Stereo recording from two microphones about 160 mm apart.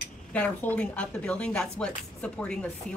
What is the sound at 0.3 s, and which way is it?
Speech, 10° left (ahead or behind).